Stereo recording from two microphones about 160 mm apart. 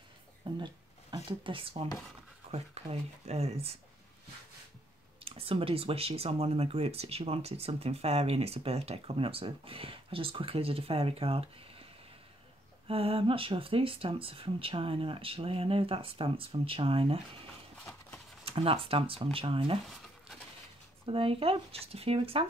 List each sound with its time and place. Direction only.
0.5 s speech: 30° right (ahead or behind)
5.3 s speech: 35° right (ahead or behind)
12.8 s speech: 35° right (ahead or behind)
18.4 s speech: 35° right (ahead or behind)
21.0 s speech: 35° right (ahead or behind)